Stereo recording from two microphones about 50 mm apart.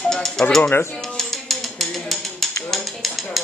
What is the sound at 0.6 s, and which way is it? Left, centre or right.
Speech, left.